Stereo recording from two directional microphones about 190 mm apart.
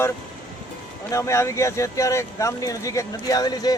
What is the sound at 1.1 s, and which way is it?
A man's voice, 15° left (ahead or behind).